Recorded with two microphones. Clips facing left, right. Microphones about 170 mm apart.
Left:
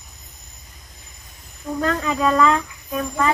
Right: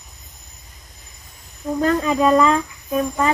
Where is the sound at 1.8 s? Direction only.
20° right (ahead or behind).